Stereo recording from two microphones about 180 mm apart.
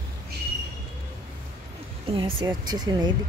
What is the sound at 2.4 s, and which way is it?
Speech, 20° right (ahead or behind).